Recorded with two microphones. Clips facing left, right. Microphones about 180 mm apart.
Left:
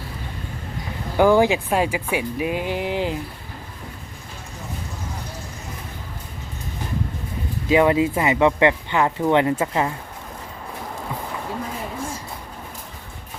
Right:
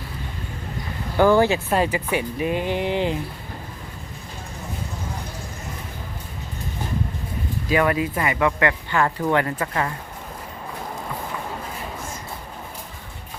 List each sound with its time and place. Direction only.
1.1 s speech: 10° left (ahead or behind)
7.7 s speech: 20° left (ahead or behind)